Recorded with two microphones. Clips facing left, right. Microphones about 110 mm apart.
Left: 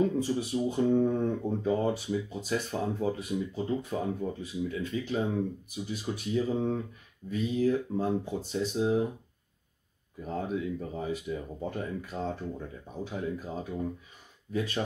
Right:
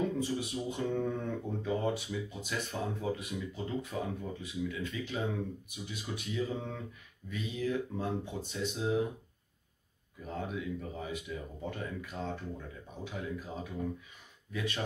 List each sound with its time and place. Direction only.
0.2 s speech: 35° left (ahead or behind)
10.2 s speech: 35° left (ahead or behind)